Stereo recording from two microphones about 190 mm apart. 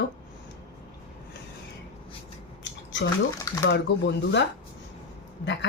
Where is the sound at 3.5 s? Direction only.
15° left (ahead or behind).